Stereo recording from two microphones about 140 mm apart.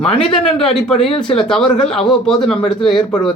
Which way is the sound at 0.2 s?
5° left (ahead or behind).